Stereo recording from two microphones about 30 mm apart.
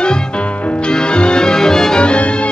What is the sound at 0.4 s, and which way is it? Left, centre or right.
Music, left.